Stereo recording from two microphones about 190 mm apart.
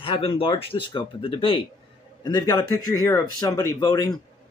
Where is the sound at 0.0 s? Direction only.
30° left (ahead or behind).